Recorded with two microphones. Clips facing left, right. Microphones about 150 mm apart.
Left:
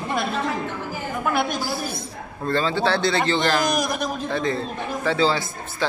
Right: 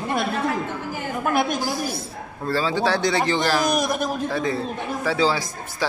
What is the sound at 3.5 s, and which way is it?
A man's voice, centre (ahead or behind).